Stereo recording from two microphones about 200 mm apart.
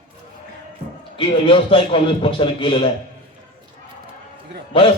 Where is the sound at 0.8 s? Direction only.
30° right (ahead or behind).